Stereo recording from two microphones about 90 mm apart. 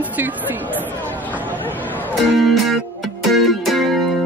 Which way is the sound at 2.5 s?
Centre (ahead or behind).